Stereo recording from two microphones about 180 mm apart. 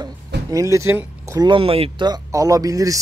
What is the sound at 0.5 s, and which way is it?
Speech, 15° right (ahead or behind).